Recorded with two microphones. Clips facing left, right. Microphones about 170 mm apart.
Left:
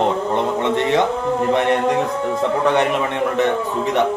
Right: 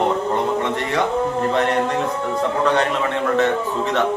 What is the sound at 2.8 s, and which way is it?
A man's voice, 15° left (ahead or behind).